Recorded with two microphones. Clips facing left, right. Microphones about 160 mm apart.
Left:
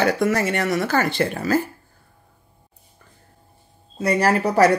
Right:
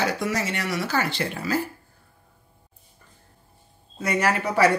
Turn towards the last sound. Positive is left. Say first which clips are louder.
# left 4 dB
turn(degrees=40)  # may be behind; listen again after turning